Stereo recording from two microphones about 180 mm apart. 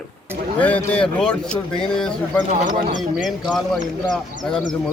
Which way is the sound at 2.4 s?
45° right (ahead or behind).